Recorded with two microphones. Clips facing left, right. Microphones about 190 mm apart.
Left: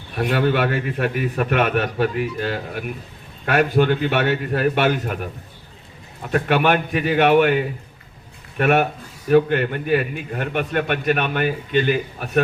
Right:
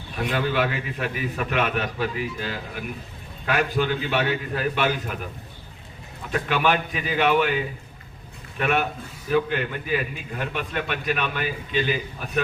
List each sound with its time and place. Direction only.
0.2 s a man's voice: 55° left (ahead or behind)
6.3 s a man's voice: 55° left (ahead or behind)